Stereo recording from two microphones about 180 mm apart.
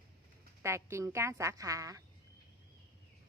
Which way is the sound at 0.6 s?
15° right (ahead or behind).